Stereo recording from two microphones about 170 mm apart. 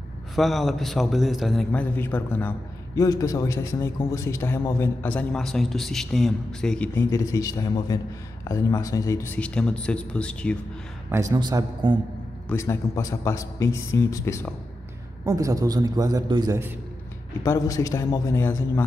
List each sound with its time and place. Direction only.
0.4 s a man's voice: centre (ahead or behind)
7.1 s a man's voice: 20° left (ahead or behind)
11.3 s a man's voice: 25° right (ahead or behind)
12.4 s speech: 15° left (ahead or behind)
15.2 s a man's voice: 20° right (ahead or behind)
17.4 s a man's voice: 20° left (ahead or behind)